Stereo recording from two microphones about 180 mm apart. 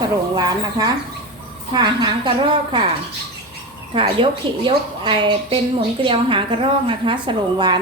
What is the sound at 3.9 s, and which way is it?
A woman's voice, 30° right (ahead or behind).